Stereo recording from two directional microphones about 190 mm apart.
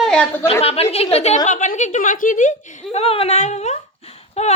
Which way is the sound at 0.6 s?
30° left (ahead or behind).